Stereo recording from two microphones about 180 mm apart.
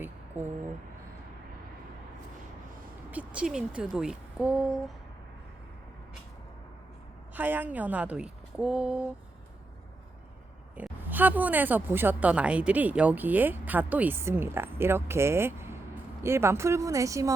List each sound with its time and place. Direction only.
0.0 s a sound: 10° right (ahead or behind)
3.1 s speech: 5° right (ahead or behind)
7.3 s a woman's voice: 10° right (ahead or behind)
10.8 s a woman's voice: 10° right (ahead or behind)